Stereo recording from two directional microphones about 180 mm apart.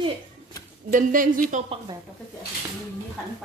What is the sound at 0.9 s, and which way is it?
Speech, 50° right (ahead or behind).